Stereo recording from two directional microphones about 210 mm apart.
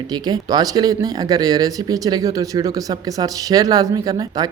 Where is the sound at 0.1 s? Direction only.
20° right (ahead or behind).